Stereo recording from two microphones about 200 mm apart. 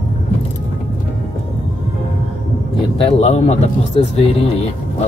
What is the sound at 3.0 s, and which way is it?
Speech, 35° left (ahead or behind).